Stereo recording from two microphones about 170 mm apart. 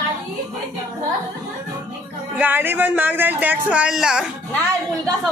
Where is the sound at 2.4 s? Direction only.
10° right (ahead or behind).